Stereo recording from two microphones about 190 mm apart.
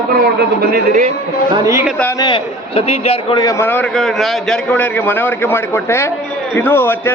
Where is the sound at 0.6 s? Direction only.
50° right (ahead or behind).